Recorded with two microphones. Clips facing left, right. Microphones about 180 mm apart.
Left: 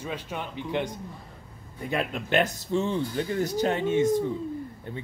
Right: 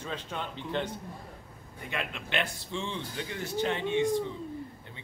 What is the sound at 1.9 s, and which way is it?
Speech, 40° left (ahead or behind).